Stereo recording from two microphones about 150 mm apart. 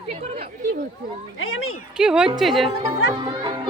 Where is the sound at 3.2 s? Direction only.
30° right (ahead or behind).